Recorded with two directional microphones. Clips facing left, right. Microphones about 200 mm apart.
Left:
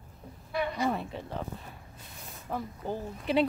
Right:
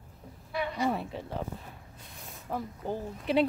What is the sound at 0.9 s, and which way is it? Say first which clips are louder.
Speech: even; 5° right (ahead or behind).